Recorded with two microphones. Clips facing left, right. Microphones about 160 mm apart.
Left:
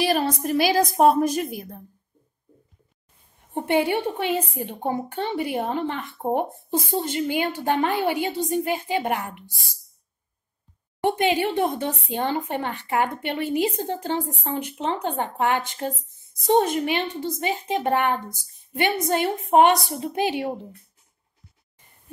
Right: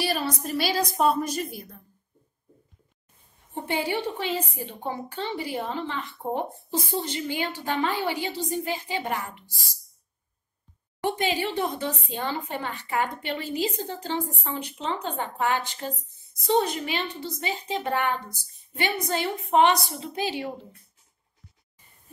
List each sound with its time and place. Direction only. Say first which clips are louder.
0.1 s speech: left 6 dB; 50° left (ahead or behind)
3.5 s speech: left 6 dB; 55° left (ahead or behind)
11.0 s a woman's voice: left 5 dB; 55° left (ahead or behind)